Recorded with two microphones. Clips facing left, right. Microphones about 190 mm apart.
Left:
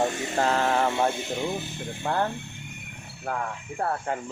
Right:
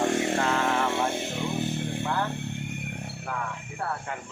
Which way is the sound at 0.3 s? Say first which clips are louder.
Left 2 dB; 35° left (ahead or behind).